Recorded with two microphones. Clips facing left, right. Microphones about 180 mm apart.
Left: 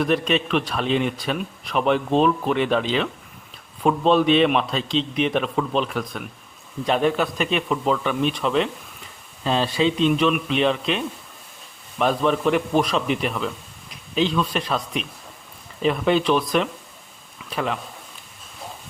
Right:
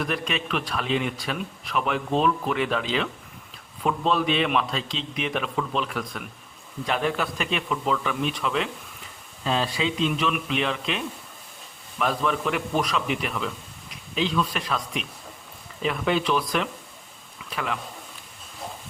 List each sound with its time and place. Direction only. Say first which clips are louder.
0.1 s a man's voice: left 7 dB; 25° left (ahead or behind)
15.8 s a man's voice: left 5 dB; 30° left (ahead or behind)